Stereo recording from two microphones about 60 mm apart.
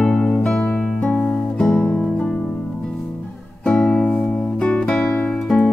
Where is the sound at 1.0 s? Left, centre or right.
Centre.